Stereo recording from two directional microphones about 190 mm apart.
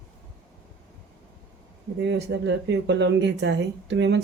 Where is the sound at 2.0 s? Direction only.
65° right (ahead or behind).